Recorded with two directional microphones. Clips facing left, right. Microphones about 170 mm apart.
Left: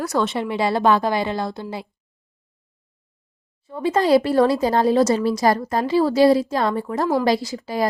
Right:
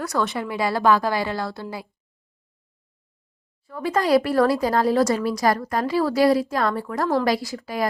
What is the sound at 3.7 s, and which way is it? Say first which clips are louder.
A woman's voice: left 3 dB; 25° left (ahead or behind).